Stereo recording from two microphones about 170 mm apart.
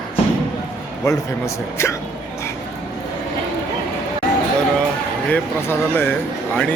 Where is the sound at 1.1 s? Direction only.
15° left (ahead or behind).